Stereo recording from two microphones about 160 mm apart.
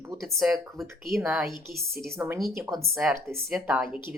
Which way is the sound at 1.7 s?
70° right (ahead or behind).